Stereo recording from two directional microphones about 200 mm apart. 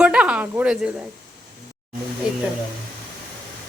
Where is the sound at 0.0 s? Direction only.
5° right (ahead or behind).